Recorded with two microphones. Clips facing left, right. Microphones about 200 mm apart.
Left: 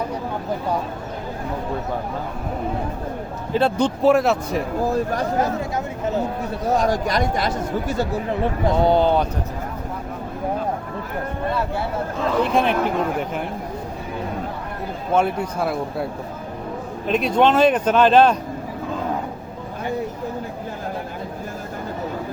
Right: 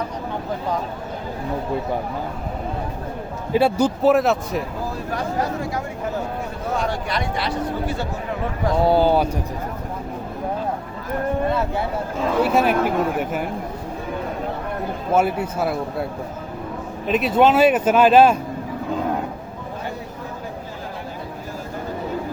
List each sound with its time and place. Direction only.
3.5 s speech: 10° right (ahead or behind)
6.7 s speech: 40° left (ahead or behind)
8.7 s speech: 5° right (ahead or behind)
12.4 s speech: 5° right (ahead or behind)
15.1 s speech: 5° right (ahead or behind)
17.1 s speech: 5° right (ahead or behind)